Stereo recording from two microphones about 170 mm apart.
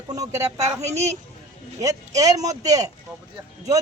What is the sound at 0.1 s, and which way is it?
A man's voice, 20° right (ahead or behind).